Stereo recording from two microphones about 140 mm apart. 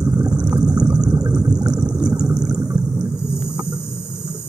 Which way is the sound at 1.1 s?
25° right (ahead or behind).